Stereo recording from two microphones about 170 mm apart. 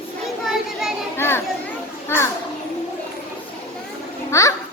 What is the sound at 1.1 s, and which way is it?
A child's voice, 15° left (ahead or behind).